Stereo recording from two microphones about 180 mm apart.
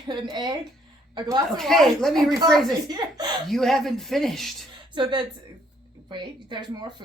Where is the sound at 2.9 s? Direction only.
20° right (ahead or behind).